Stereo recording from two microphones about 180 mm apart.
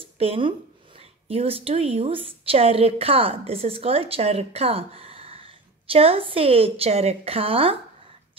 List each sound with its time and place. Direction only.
0.0 s speech: 30° right (ahead or behind)